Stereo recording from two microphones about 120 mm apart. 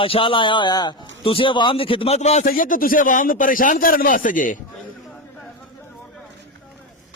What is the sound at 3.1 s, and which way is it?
A man's voice, 90° left.